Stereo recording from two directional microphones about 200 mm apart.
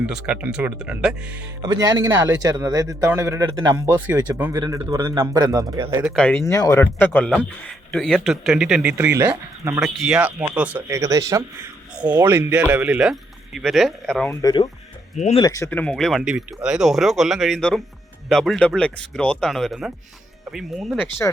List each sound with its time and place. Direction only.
0.0 s speech: 5° right (ahead or behind)
1.6 s speech: 20° right (ahead or behind)
6.1 s speech: 10° left (ahead or behind)
14.4 s speech: 20° left (ahead or behind); by 21.1 s centre (ahead or behind)